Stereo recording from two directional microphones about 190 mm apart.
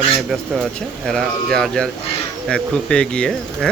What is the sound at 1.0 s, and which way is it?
Speech, centre (ahead or behind).